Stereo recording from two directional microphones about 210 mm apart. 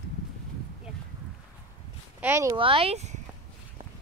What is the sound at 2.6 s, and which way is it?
Speech, 25° right (ahead or behind).